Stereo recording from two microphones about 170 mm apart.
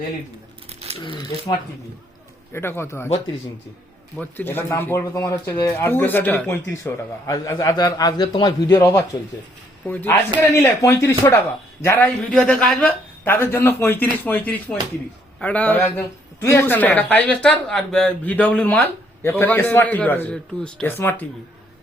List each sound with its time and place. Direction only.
0.7 s crumpling: 35° right (ahead or behind)
0.9 s a man's voice: 30° left (ahead or behind)
2.5 s a man's voice: 15° left (ahead or behind)
4.2 s a man's voice: 10° left (ahead or behind)